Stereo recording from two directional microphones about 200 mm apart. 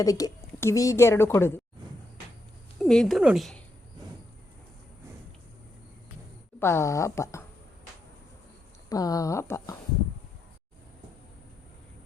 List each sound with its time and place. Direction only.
0.0 s a woman's voice: 15° left (ahead or behind)
2.7 s speech: centre (ahead or behind)
6.6 s a woman's voice: 10° left (ahead or behind)
8.9 s a woman's voice: 15° left (ahead or behind)